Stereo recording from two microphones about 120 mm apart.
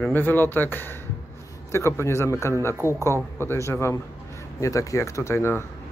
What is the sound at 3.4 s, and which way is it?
A man's voice, 20° left (ahead or behind).